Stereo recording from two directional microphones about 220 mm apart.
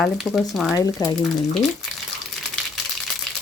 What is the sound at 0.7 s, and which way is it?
Speech, 15° left (ahead or behind).